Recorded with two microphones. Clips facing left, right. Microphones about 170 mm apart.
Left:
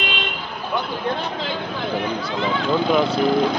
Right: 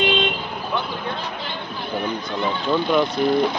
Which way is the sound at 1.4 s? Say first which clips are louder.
Left 5 dB; 90° left.